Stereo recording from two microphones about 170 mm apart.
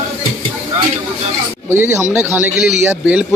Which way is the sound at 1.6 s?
15° right (ahead or behind).